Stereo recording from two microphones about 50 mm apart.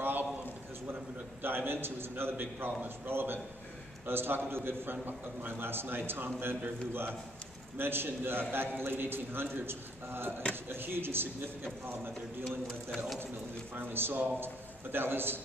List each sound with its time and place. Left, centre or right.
0.0 s a sound: right
1.4 s a man's voice: right
12.4 s a man's voice: centre
13.7 s a man's voice: right